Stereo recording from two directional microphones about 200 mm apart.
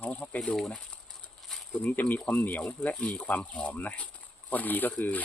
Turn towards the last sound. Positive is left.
turn(degrees=10)  # may be behind; listen again after turning